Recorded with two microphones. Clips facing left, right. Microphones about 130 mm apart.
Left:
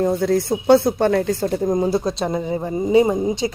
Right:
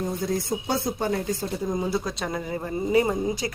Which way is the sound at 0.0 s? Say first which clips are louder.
Left 9 dB; 70° left (ahead or behind).